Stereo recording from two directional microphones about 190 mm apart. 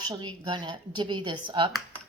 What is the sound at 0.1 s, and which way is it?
Speech, 20° right (ahead or behind).